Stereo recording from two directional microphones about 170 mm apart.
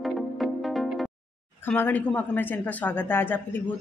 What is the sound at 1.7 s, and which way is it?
A woman's voice, 10° left (ahead or behind).